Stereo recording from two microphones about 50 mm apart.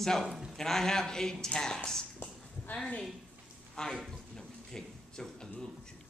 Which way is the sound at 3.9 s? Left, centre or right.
Centre.